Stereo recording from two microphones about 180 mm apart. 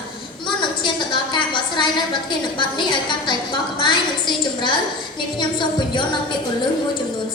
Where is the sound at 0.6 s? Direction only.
25° left (ahead or behind).